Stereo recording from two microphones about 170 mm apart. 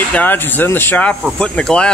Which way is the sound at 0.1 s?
10° left (ahead or behind).